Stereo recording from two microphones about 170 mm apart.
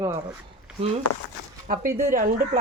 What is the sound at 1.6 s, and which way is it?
Speech, 55° right (ahead or behind).